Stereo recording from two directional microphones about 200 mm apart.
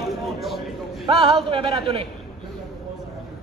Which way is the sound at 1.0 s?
30° right (ahead or behind).